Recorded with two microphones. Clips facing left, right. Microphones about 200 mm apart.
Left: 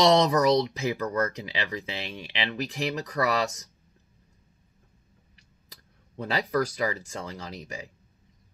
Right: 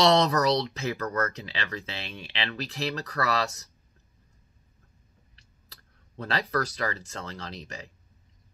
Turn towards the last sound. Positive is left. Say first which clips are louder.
# left 2 dB
turn(degrees=10)  # may be behind; listen again after turning